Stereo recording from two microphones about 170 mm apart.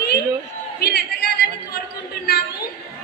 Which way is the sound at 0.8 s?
70° left (ahead or behind).